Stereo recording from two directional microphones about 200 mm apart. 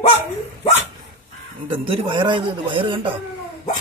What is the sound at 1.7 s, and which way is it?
Speech, 25° right (ahead or behind).